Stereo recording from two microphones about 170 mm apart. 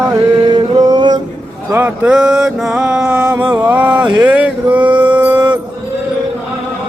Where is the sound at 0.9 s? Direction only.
25° right (ahead or behind).